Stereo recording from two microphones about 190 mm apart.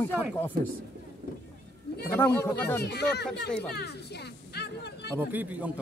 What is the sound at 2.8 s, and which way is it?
Speech, 60° left (ahead or behind).